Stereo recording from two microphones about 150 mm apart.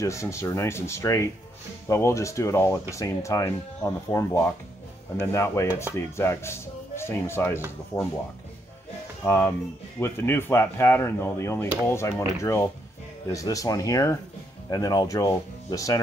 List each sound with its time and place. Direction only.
0.0 s speech: 20° left (ahead or behind)
9.2 s speech: 15° left (ahead or behind)